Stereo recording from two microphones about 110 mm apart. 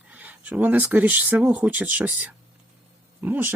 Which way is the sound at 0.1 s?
15° right (ahead or behind).